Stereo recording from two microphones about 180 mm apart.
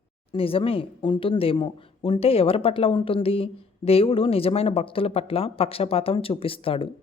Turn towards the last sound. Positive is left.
turn(degrees=30)  # may be behind; listen again after turning